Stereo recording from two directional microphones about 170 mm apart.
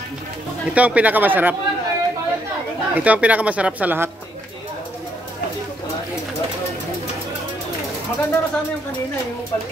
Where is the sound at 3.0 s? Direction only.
10° right (ahead or behind).